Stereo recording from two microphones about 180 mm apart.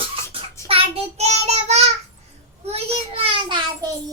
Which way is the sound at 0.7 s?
35° right (ahead or behind).